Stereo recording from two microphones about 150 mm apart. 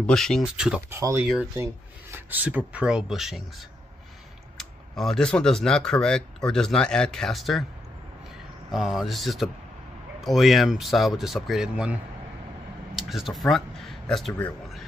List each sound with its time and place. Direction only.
0.0 s speech: 5° left (ahead or behind)
0.8 s speech: 15° right (ahead or behind)
1.2 s speech: 5° right (ahead or behind)
4.6 s speech: centre (ahead or behind)
8.7 s speech: centre (ahead or behind)